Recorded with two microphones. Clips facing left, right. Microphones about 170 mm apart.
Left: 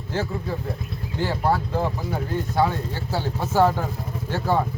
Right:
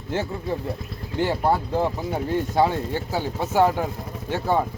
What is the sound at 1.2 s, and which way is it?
Speech, 20° right (ahead or behind).